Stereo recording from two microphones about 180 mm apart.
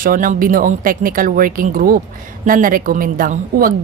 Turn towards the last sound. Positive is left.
turn(degrees=-50)  # may be behind; listen again after turning